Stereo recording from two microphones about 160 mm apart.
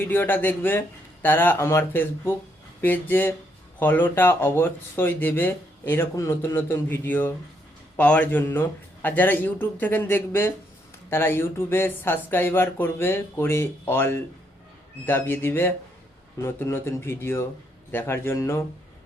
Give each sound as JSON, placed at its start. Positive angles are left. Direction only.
{"t": 0.0, "sound": "speech", "side_deg": 15}